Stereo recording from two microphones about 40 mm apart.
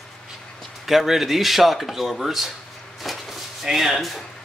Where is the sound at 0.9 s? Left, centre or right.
Centre.